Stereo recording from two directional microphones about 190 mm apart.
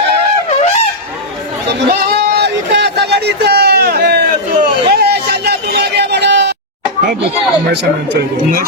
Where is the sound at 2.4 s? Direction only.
60° right (ahead or behind).